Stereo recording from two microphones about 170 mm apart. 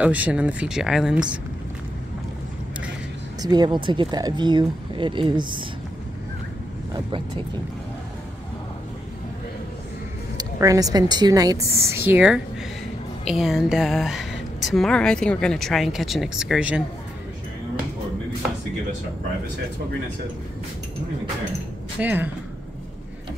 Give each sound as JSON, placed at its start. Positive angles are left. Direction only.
{"t": 0.0, "sound": "speech", "side_deg": -10}
{"t": 3.4, "sound": "speech", "side_deg": -25}
{"t": 10.3, "sound": "speech", "side_deg": -20}
{"t": 11.9, "sound": "speech", "side_deg": -10}
{"t": 22.0, "sound": "speech", "side_deg": -10}